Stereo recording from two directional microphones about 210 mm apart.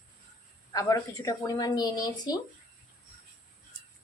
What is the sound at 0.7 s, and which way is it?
A woman's voice, 15° left (ahead or behind).